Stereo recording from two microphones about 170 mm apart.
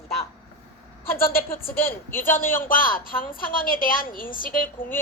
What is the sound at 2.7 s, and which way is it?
A woman's voice, 55° left (ahead or behind).